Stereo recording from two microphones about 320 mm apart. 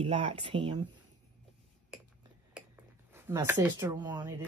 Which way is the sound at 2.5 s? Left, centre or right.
Centre.